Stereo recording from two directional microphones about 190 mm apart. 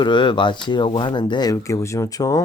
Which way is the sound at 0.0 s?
25° left (ahead or behind).